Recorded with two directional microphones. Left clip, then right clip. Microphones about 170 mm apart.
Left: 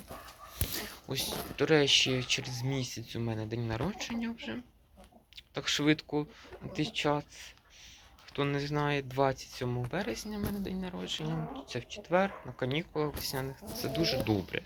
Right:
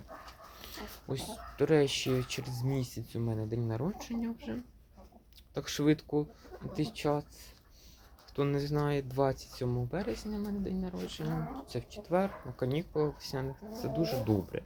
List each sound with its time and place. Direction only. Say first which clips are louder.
0.6 s speech: left 7 dB; 15° right (ahead or behind)
13.2 s speech: left 2 dB; 10° right (ahead or behind)